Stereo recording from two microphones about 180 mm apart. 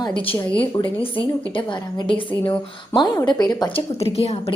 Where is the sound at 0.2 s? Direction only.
30° left (ahead or behind).